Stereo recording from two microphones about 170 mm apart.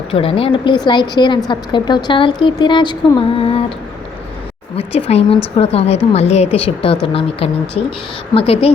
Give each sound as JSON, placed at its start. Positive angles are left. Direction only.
{"t": 0.1, "sound": "a woman's voice", "side_deg": 35}
{"t": 4.8, "sound": "speech", "side_deg": 35}